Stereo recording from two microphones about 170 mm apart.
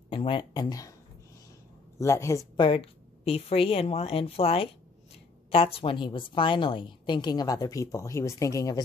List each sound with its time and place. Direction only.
0.1 s speech: 30° left (ahead or behind)
2.0 s a woman's voice: 15° left (ahead or behind)